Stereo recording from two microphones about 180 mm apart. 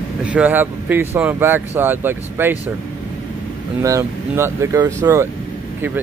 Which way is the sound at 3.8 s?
15° right (ahead or behind).